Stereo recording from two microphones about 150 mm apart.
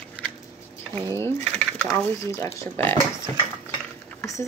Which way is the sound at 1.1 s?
15° left (ahead or behind).